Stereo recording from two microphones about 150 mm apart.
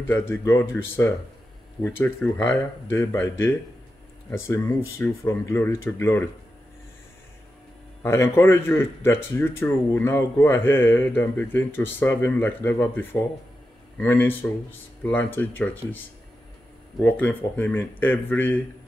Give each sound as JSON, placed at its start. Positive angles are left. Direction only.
{"t": 0.1, "sound": "speech", "side_deg": 15}
{"t": 8.0, "sound": "speech", "side_deg": 15}